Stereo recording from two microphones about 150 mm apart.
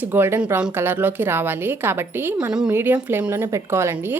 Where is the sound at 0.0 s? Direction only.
15° right (ahead or behind).